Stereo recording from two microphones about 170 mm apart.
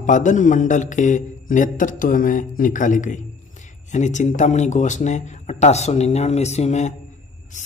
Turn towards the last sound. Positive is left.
turn(degrees=40)  # may be behind; listen again after turning